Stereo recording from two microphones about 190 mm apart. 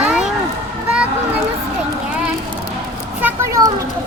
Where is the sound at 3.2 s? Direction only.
15° right (ahead or behind).